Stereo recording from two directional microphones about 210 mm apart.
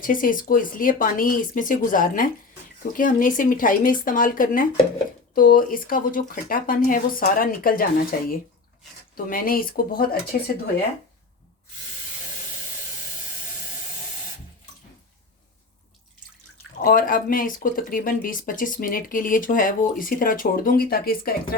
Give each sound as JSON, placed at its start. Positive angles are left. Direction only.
{"t": 0.0, "sound": "speech", "side_deg": 40}
{"t": 16.8, "sound": "speech", "side_deg": 40}